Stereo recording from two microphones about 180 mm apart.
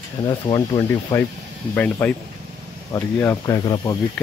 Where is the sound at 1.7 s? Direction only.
10° left (ahead or behind).